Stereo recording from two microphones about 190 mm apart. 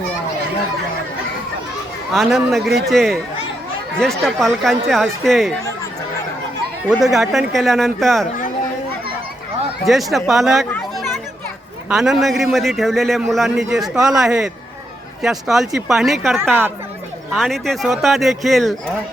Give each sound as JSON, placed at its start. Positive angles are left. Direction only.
{"t": 2.1, "sound": "speech", "side_deg": 0}
{"t": 2.6, "sound": "a man's voice", "side_deg": -60}
{"t": 2.9, "sound": "speech", "side_deg": 0}
{"t": 6.8, "sound": "speech", "side_deg": 0}
{"t": 9.8, "sound": "speech", "side_deg": 0}
{"t": 10.7, "sound": "chatter", "side_deg": 5}
{"t": 11.9, "sound": "speech", "side_deg": -5}